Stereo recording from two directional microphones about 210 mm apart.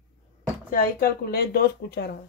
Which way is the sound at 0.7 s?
40° left (ahead or behind).